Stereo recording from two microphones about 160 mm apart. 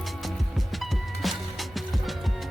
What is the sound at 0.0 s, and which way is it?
Music, centre (ahead or behind).